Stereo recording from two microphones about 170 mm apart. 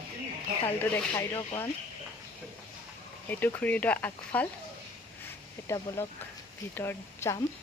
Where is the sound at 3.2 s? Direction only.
10° left (ahead or behind).